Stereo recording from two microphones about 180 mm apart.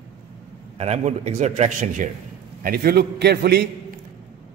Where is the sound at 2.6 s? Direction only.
55° right (ahead or behind).